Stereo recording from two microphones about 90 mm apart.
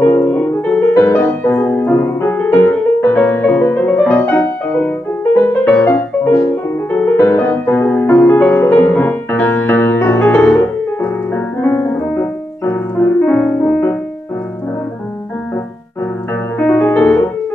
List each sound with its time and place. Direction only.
0.0 s music: 30° left (ahead or behind)
0.3 s music: 15° left (ahead or behind)
5.9 s music: 25° left (ahead or behind)
10.6 s piano: 20° left (ahead or behind)
16.5 s music: 15° left (ahead or behind)